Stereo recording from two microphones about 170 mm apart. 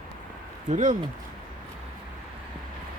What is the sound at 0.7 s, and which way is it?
Speech, 50° right (ahead or behind).